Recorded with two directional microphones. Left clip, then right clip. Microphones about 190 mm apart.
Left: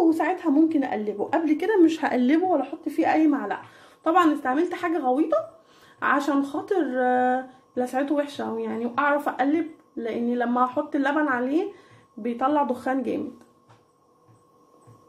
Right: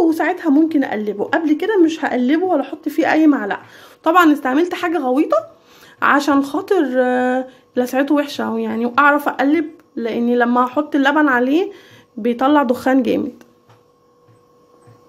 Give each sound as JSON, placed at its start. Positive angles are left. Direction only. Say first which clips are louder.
{"t": 0.0, "sound": "a woman's voice", "louder": "right 6 dB", "side_deg": -25}
{"t": 2.5, "sound": "a woman's voice", "louder": "right 6 dB", "side_deg": -30}